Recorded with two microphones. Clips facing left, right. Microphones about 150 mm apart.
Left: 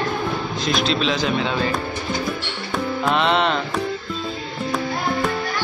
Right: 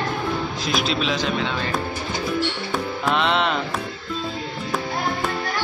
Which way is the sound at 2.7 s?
Centre (ahead or behind).